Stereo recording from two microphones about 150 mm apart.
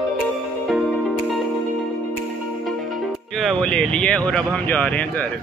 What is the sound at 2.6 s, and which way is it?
Music, centre (ahead or behind).